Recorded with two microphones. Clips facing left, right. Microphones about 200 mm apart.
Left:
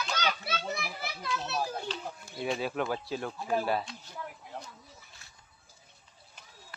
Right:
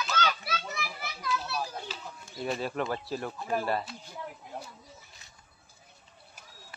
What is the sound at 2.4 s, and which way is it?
Speech, centre (ahead or behind).